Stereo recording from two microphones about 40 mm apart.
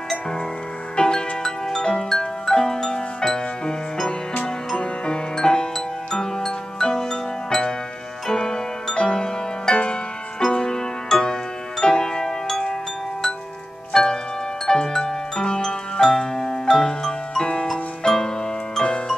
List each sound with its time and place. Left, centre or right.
0.9 s music: left
13.9 s music: centre
18.9 s music: left